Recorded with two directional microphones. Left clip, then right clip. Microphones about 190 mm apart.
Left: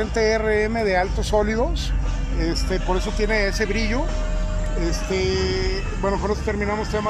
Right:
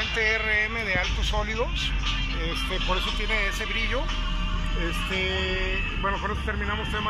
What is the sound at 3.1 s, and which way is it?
Speech, 65° left (ahead or behind).